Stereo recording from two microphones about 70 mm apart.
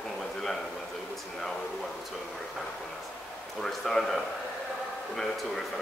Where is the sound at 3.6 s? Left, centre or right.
Centre.